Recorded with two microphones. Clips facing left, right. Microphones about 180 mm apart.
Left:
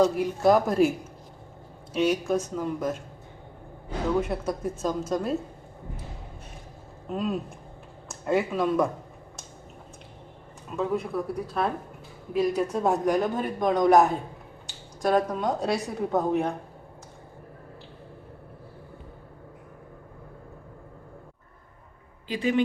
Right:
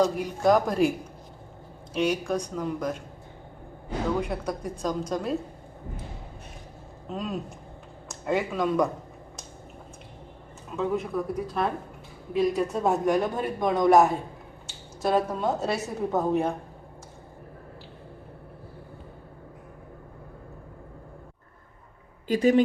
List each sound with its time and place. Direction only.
0.0 s speech: 5° left (ahead or behind)
4.2 s speech: 5° left (ahead or behind)
7.1 s speech: centre (ahead or behind)
10.8 s speech: centre (ahead or behind)
22.3 s speech: 40° right (ahead or behind)